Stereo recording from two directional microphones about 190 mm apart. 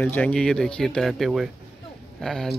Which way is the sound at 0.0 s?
10° left (ahead or behind).